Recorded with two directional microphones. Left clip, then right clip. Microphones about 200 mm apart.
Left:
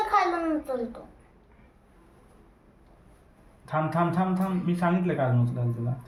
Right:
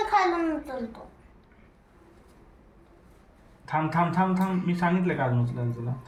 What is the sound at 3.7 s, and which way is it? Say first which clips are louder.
A man's voice: right 1 dB; 30° left (ahead or behind).